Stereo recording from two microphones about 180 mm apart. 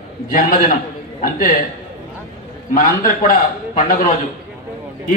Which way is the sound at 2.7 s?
50° left (ahead or behind).